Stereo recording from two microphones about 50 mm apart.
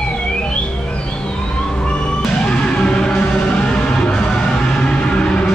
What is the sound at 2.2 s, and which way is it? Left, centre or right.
Music, centre.